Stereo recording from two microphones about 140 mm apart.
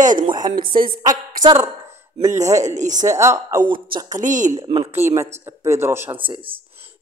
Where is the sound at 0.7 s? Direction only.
90° right.